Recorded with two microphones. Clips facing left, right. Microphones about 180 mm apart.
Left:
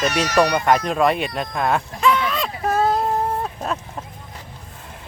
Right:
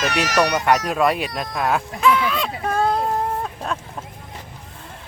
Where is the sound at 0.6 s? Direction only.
5° right (ahead or behind).